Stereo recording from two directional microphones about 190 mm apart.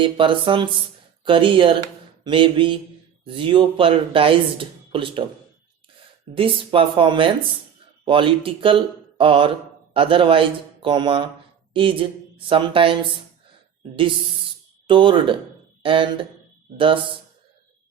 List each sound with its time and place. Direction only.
0.0 s speech: 25° right (ahead or behind)
6.3 s speech: 25° right (ahead or behind)
14.8 s speech: 25° right (ahead or behind)